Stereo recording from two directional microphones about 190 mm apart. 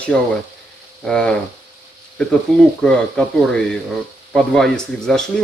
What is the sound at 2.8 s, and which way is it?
Speech, 5° left (ahead or behind).